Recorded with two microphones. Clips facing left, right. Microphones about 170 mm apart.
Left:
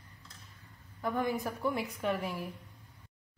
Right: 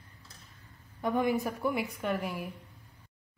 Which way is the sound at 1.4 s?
10° right (ahead or behind).